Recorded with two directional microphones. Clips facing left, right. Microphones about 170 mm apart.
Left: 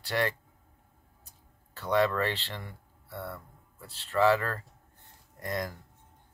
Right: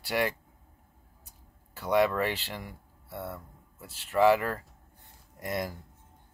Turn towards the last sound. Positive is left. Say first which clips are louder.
# right 1 dB
turn(degrees=-10)  # may be behind; listen again after turning